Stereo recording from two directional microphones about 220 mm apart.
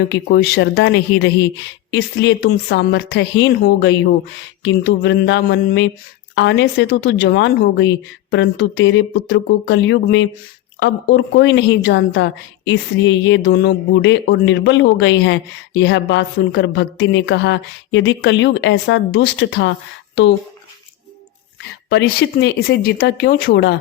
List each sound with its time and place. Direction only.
0.1 s a woman's voice: 55° left (ahead or behind)
21.8 s speech: 50° left (ahead or behind)